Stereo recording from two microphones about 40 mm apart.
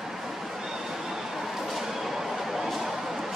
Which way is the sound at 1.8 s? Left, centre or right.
Centre.